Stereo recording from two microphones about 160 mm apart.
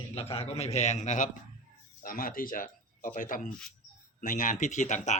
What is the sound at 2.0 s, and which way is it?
Speech, 60° left (ahead or behind).